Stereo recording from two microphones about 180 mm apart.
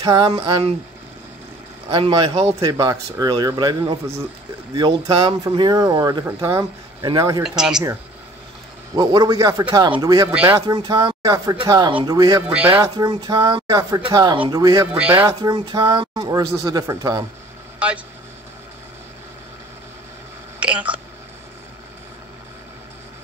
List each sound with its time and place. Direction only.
0.0 s speech: 20° right (ahead or behind)
1.9 s speech: 25° right (ahead or behind)
2.6 s speech: 20° right (ahead or behind)
7.4 s speech: 5° right (ahead or behind)
8.9 s speech: 20° right (ahead or behind)
10.3 s speech: 10° right (ahead or behind)
10.7 s speech: 20° right (ahead or behind)
12.4 s speech: 10° right (ahead or behind)
14.9 s speech: 5° right (ahead or behind)
17.7 s speech: 5° right (ahead or behind)
20.5 s speech: 5° right (ahead or behind)